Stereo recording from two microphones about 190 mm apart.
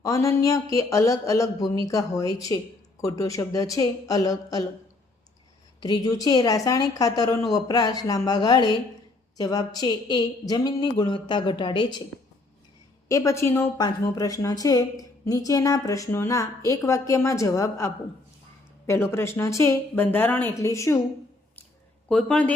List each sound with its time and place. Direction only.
0.0 s speech: 15° left (ahead or behind)
5.8 s a woman's voice: 20° left (ahead or behind)
13.1 s speech: 15° left (ahead or behind)
22.1 s speech: 5° left (ahead or behind)